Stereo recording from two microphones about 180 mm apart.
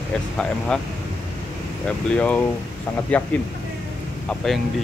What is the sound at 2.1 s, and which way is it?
Speech, 5° left (ahead or behind).